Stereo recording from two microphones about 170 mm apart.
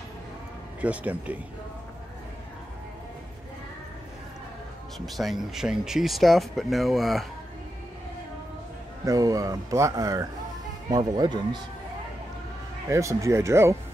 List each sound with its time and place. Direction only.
0.7 s speech: 10° right (ahead or behind)
4.9 s speech: centre (ahead or behind)
9.0 s speech: 20° right (ahead or behind)
12.9 s speech: 15° right (ahead or behind)